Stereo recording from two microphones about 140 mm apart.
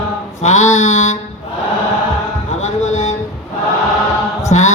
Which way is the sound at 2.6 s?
55° left (ahead or behind).